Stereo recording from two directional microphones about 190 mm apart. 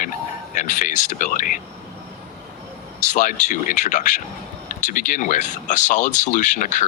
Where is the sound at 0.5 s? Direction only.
45° left (ahead or behind).